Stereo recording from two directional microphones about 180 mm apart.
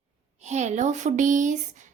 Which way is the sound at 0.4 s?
40° right (ahead or behind).